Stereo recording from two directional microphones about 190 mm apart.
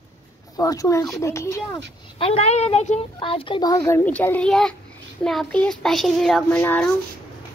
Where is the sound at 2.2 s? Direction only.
30° left (ahead or behind); by 6.9 s 10° left (ahead or behind).